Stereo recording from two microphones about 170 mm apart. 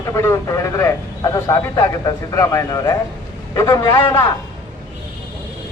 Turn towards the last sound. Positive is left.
turn(degrees=15)  # may be behind; listen again after turning